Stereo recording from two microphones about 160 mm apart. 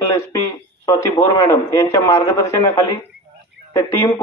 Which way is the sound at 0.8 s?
20° left (ahead or behind).